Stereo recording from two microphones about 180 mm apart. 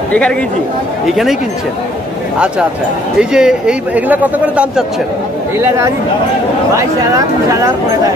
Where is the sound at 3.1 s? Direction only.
5° right (ahead or behind).